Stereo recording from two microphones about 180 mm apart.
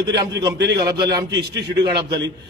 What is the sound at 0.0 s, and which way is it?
A man's voice, 20° right (ahead or behind).